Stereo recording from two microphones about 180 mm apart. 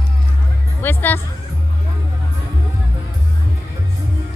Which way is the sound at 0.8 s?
10° left (ahead or behind).